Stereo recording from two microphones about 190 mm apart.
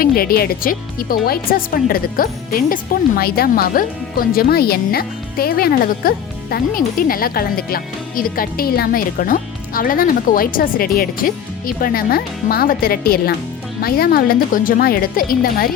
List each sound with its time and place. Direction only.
0.0 s speech: 50° left (ahead or behind)